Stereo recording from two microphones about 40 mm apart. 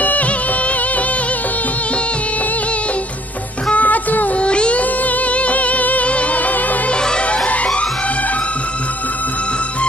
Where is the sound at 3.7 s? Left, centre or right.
Left.